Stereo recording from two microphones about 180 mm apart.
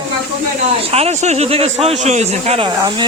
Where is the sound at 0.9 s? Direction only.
35° right (ahead or behind).